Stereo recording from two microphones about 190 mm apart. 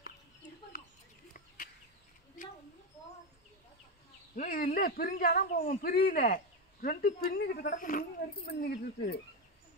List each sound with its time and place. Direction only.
4.4 s speech: 45° left (ahead or behind)